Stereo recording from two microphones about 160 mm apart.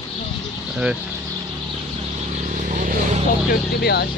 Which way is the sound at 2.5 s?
50° right (ahead or behind).